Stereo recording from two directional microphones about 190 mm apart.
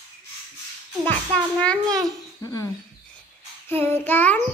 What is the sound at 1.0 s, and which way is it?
A child's voice, 5° left (ahead or behind).